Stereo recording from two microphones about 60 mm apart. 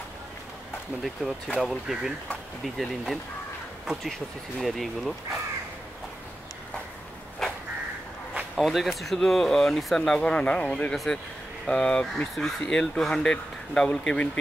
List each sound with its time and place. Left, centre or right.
1.6 s speech: centre
7.4 s crow: centre
8.5 s speech: centre
10.1 s speech: centre